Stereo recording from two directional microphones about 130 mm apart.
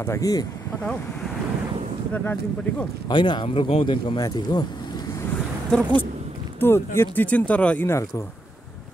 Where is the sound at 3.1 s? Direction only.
35° left (ahead or behind).